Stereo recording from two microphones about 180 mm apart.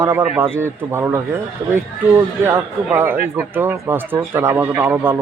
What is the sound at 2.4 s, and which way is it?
Speech, 15° right (ahead or behind).